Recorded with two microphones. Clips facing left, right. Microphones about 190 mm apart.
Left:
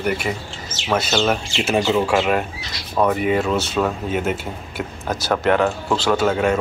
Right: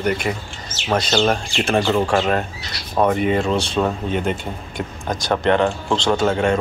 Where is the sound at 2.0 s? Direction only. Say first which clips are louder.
Even; 45° right (ahead or behind).